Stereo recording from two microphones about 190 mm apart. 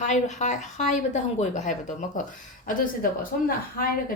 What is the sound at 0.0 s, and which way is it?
A woman's voice, 40° left (ahead or behind).